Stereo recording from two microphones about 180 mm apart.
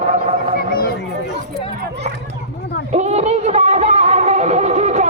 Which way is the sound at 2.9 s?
40° right (ahead or behind).